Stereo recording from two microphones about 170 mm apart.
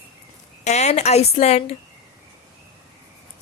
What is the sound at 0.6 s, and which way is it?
Speech, 40° left (ahead or behind).